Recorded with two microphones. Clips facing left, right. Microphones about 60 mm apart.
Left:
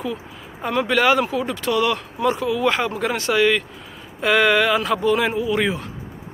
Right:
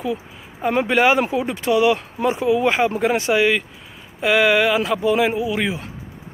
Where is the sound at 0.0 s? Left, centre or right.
Centre.